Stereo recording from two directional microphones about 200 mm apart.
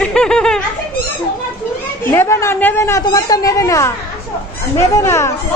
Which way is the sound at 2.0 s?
15° left (ahead or behind).